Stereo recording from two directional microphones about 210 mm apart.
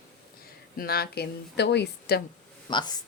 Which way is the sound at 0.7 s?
45° left (ahead or behind).